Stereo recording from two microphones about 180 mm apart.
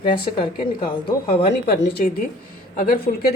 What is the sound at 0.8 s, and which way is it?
A woman's voice, 55° left (ahead or behind).